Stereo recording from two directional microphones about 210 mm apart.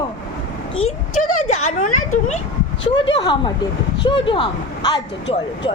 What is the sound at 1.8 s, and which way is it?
Speech, 90° left.